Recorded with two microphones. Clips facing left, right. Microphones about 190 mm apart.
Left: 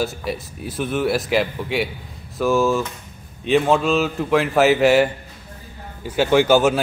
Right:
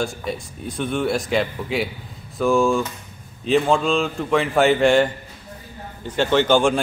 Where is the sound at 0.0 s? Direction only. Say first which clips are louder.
Left 1 dB; 5° left (ahead or behind).